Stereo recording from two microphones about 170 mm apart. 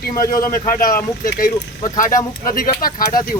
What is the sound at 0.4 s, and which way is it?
Speech, 55° left (ahead or behind).